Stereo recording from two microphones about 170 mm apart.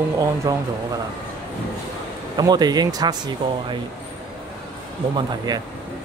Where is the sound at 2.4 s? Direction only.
25° right (ahead or behind).